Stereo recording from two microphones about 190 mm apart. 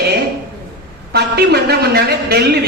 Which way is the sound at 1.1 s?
55° right (ahead or behind).